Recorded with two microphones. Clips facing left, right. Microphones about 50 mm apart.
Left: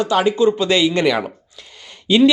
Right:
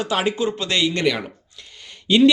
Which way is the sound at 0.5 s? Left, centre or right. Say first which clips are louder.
Left 6 dB; centre.